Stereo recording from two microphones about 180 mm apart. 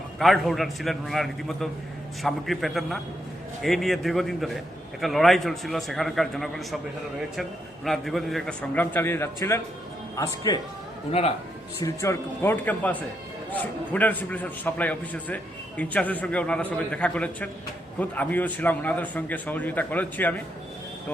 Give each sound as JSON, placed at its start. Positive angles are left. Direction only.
{"t": 0.2, "sound": "a man's voice", "side_deg": 0}
{"t": 7.9, "sound": "a man's voice", "side_deg": 0}
{"t": 11.1, "sound": "a man's voice", "side_deg": 35}
{"t": 11.8, "sound": "a man's voice", "side_deg": 15}